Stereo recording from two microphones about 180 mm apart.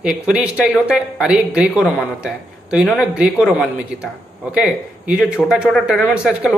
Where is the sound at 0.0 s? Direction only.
5° right (ahead or behind).